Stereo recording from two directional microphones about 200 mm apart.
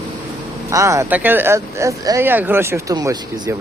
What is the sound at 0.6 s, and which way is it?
Speech, 15° right (ahead or behind).